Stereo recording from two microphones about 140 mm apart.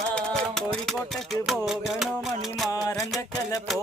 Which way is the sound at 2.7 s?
25° left (ahead or behind).